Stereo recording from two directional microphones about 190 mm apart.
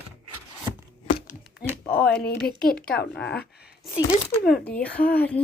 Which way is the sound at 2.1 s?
55° left (ahead or behind).